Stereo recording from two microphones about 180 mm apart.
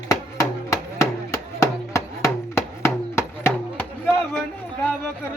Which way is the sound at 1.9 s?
15° left (ahead or behind).